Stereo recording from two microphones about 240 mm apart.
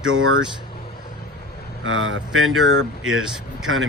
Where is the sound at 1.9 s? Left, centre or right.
Right.